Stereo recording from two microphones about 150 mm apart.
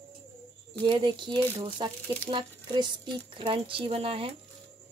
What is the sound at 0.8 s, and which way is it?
Speech, 30° right (ahead or behind).